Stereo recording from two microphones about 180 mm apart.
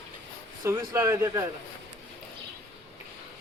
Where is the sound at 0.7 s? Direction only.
15° right (ahead or behind).